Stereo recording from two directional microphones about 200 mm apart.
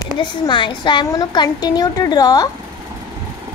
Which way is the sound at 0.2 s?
25° left (ahead or behind).